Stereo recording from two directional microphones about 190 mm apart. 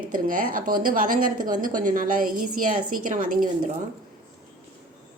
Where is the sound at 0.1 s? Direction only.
45° right (ahead or behind).